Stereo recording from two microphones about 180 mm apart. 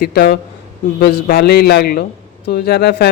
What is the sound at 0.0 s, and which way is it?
Speech, 55° left (ahead or behind).